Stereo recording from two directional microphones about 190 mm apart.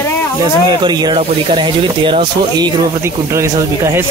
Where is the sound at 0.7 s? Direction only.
20° right (ahead or behind).